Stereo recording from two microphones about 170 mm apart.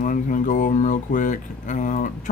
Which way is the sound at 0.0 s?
50° left (ahead or behind).